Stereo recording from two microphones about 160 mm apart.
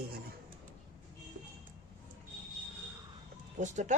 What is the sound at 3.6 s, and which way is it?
Speech, 50° right (ahead or behind).